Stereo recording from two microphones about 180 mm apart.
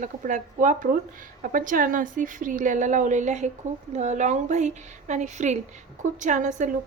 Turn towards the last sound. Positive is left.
turn(degrees=-45)  # may be behind; listen again after turning